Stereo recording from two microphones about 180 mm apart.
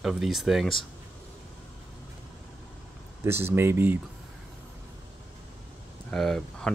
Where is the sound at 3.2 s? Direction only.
15° right (ahead or behind).